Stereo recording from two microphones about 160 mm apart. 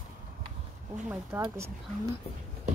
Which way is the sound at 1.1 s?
15° right (ahead or behind).